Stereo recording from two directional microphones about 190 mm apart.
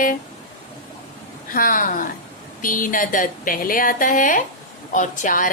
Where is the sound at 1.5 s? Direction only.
45° left (ahead or behind).